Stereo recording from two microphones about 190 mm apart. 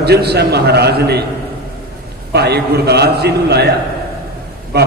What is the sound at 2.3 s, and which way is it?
A man's voice, 60° right (ahead or behind).